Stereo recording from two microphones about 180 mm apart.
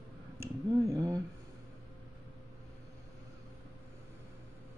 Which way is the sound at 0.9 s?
20° right (ahead or behind).